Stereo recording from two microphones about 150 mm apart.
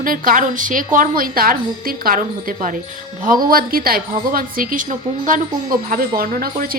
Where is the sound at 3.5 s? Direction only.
75° right (ahead or behind).